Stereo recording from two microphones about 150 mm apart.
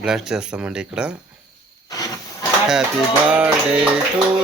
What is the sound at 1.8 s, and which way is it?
Hiss, 25° left (ahead or behind).